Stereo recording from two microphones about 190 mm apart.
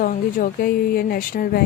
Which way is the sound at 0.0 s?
45° left (ahead or behind).